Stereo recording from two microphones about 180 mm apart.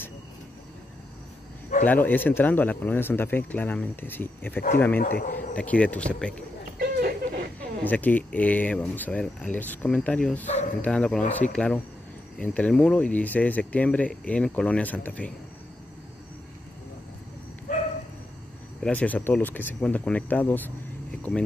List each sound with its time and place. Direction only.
1.9 s speech: 10° left (ahead or behind)
5.0 s a man's voice: 45° left (ahead or behind)
5.5 s speech: 5° left (ahead or behind)
6.8 s a sound: 55° right (ahead or behind)
7.9 s speech: 10° left (ahead or behind)
17.7 s a sound: 45° left (ahead or behind)
18.8 s speech: 10° left (ahead or behind)